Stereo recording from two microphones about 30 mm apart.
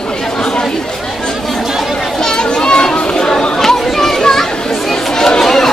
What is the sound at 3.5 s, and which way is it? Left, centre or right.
Children playing, centre.